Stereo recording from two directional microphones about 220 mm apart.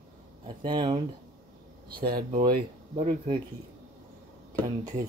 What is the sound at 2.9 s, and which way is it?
Speech, 25° right (ahead or behind).